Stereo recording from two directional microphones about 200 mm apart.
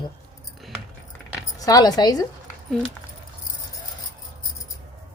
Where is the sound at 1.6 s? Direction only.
20° left (ahead or behind).